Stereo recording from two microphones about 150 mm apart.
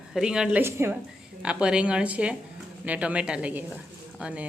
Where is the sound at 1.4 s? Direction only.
5° right (ahead or behind).